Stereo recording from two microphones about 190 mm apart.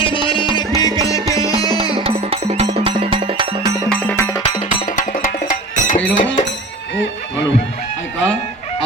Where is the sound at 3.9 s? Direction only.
10° left (ahead or behind).